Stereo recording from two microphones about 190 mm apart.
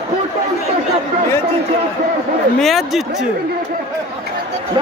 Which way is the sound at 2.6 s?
Centre (ahead or behind).